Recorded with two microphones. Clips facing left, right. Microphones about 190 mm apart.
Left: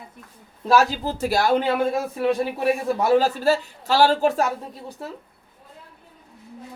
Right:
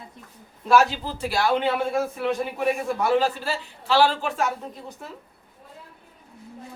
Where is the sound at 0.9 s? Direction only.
40° left (ahead or behind).